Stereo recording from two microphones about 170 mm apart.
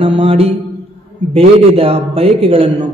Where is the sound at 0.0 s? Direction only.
30° right (ahead or behind).